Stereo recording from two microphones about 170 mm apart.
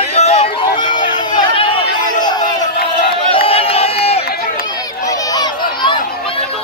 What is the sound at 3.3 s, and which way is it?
Crowd, 35° left (ahead or behind).